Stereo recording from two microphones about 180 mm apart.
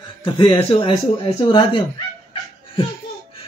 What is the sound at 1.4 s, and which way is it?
Speech, 30° left (ahead or behind).